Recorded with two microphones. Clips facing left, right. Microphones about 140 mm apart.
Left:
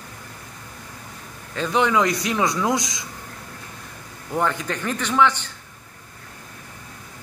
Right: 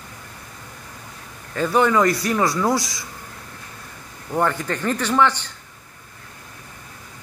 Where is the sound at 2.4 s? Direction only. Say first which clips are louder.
Left 1 dB; centre (ahead or behind).